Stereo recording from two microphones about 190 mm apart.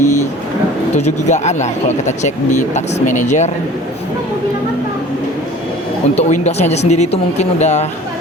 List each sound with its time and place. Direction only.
0.0 s a sound: 40° left (ahead or behind)
0.9 s speech: 35° left (ahead or behind)
6.1 s speech: 35° left (ahead or behind)